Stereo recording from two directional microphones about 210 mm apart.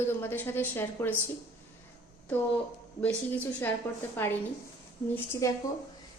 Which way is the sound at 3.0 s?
5° left (ahead or behind).